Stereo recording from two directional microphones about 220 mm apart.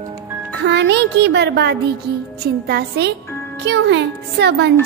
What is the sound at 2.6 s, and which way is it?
Speech, 45° right (ahead or behind).